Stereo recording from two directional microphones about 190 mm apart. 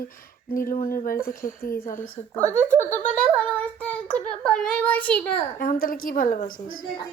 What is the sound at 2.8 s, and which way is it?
A child's voice, 10° left (ahead or behind).